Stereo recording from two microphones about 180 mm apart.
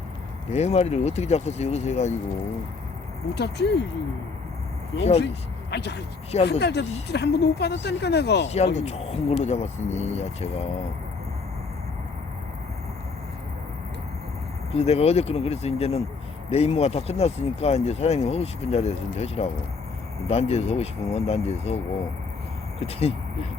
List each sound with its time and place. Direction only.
0.5 s speech: 35° left (ahead or behind)
3.3 s speech: 70° left (ahead or behind)
5.7 s speech: 70° left (ahead or behind)
8.4 s speech: 35° left (ahead or behind)
14.7 s speech: 35° left (ahead or behind)
22.8 s speech: 35° left (ahead or behind)